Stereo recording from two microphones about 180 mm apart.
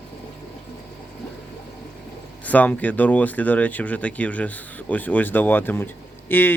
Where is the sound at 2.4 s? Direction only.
10° left (ahead or behind).